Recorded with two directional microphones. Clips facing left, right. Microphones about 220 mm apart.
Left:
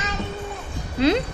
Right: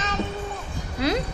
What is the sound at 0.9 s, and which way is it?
Music, 25° left (ahead or behind).